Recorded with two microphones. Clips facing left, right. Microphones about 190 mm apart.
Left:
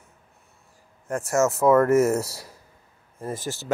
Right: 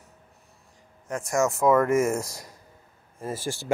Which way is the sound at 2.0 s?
70° left (ahead or behind).